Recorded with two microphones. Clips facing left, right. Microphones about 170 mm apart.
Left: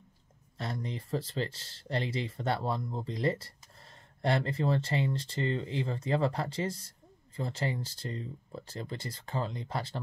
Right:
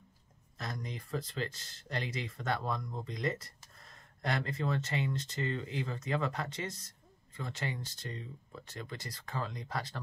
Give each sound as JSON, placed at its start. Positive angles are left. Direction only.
{"t": 0.6, "sound": "speech", "side_deg": 30}